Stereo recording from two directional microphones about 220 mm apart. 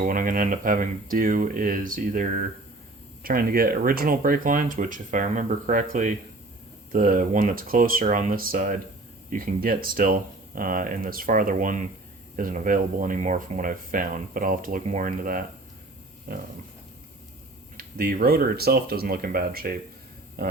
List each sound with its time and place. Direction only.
0.0 s speech: 40° right (ahead or behind)
17.7 s speech: 40° right (ahead or behind)